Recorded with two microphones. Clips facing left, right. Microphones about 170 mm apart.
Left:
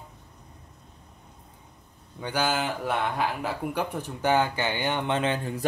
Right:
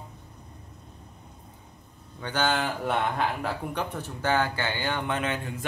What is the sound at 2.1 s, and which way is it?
A man's voice, 10° left (ahead or behind).